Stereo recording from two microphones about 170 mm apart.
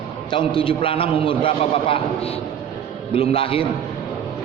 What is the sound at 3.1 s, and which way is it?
Speech, 35° left (ahead or behind).